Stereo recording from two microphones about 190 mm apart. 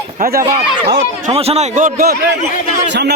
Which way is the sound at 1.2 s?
30° right (ahead or behind).